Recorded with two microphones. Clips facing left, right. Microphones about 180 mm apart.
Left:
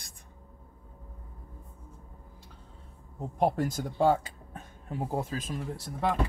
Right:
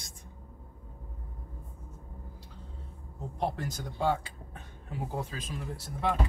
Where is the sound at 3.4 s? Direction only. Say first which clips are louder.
Left 6 dB; 50° left (ahead or behind).